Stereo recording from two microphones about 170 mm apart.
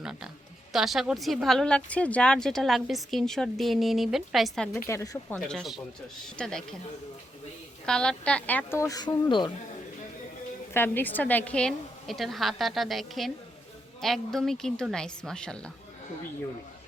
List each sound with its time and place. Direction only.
0.0 s a woman's voice: 5° right (ahead or behind)
4.9 s a woman's voice: 15° left (ahead or behind)
5.5 s a woman's voice: centre (ahead or behind)
7.9 s a woman's voice: 5° left (ahead or behind); by 9.5 s 25° left (ahead or behind)
10.8 s a woman's voice: 10° left (ahead or behind)